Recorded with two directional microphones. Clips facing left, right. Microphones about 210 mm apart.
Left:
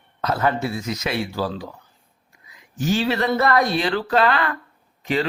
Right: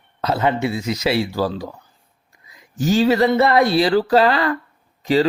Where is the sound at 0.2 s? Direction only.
25° right (ahead or behind).